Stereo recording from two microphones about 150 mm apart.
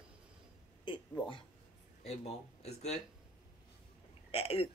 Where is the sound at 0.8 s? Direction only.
35° left (ahead or behind).